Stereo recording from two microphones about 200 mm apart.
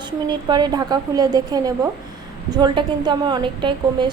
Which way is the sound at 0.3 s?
20° right (ahead or behind).